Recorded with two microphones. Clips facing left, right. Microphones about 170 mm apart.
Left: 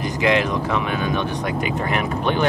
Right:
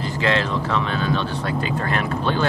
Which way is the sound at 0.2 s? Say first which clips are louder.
Left 3 dB; 15° left (ahead or behind).